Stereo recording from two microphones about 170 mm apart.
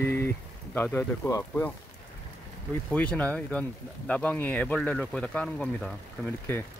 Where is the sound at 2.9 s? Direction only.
10° left (ahead or behind).